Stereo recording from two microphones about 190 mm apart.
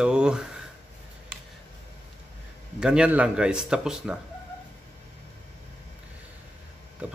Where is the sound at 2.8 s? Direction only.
5° right (ahead or behind).